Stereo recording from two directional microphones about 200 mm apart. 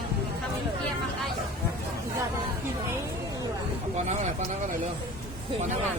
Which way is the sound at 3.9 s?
35° right (ahead or behind).